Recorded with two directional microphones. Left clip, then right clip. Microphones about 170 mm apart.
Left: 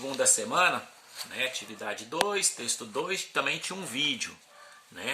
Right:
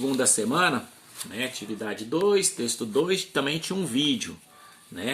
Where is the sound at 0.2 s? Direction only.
30° left (ahead or behind).